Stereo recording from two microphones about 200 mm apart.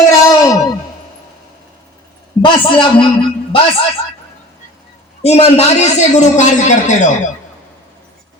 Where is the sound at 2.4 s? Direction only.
25° left (ahead or behind).